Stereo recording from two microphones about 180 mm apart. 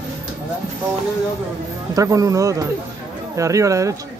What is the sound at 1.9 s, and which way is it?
Speech, 20° right (ahead or behind).